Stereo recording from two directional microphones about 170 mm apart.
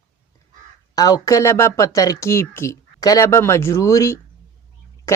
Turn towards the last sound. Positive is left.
turn(degrees=20)  # may be behind; listen again after turning